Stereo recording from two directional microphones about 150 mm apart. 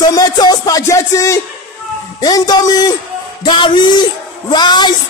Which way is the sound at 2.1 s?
25° left (ahead or behind).